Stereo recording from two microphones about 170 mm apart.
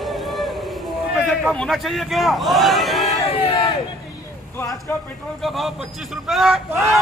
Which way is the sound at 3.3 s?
30° left (ahead or behind).